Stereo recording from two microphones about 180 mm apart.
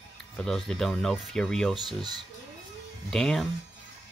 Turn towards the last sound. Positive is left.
turn(degrees=0)  # may be behind; listen again after turning